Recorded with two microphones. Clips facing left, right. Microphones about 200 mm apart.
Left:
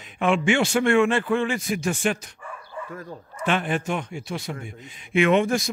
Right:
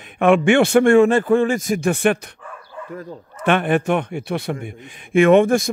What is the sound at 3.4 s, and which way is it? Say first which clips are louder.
A man's voice: right 7 dB; 60° right (ahead or behind).